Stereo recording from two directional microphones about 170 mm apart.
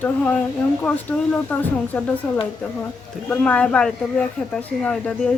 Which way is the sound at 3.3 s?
10° left (ahead or behind).